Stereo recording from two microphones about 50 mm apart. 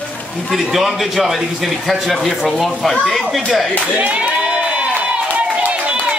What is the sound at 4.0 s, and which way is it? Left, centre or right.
Speech, right.